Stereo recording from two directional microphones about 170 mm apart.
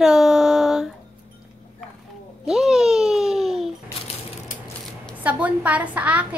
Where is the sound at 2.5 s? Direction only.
5° right (ahead or behind).